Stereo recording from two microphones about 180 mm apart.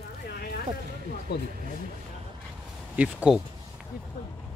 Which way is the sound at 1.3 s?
65° left (ahead or behind).